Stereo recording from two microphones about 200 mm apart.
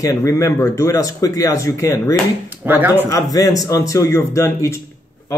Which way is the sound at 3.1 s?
20° left (ahead or behind).